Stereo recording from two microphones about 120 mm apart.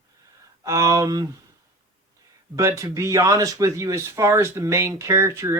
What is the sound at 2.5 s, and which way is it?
Speech, 25° right (ahead or behind).